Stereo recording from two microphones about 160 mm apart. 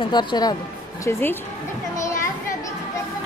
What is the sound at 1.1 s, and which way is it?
Speech, 15° left (ahead or behind).